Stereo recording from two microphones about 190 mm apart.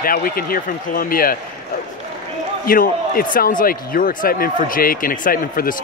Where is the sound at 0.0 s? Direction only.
50° left (ahead or behind).